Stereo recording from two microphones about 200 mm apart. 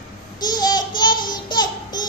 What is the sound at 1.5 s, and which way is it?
Music, 20° left (ahead or behind).